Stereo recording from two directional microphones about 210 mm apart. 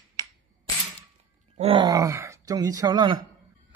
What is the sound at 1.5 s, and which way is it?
Speech, 25° right (ahead or behind).